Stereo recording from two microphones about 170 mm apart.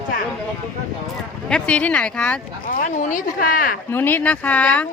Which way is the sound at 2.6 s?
50° left (ahead or behind).